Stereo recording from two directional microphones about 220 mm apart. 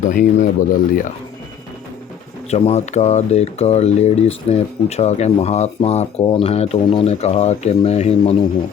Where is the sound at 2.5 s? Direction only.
30° left (ahead or behind).